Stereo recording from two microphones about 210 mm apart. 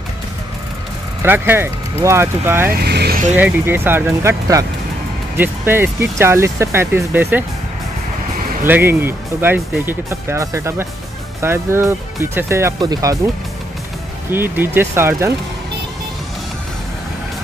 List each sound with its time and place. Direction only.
1.2 s speech: 10° right (ahead or behind)
2.7 s speech: 50° right (ahead or behind)
3.3 s speech: 10° right (ahead or behind)
8.6 s speech: 10° right (ahead or behind)
14.3 s speech: 10° right (ahead or behind)